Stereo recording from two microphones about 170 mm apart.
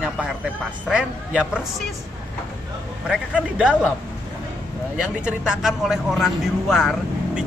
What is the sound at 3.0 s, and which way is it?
Speech, 5° right (ahead or behind).